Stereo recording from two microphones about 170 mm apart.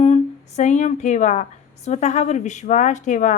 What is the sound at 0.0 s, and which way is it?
A woman's voice, 40° left (ahead or behind).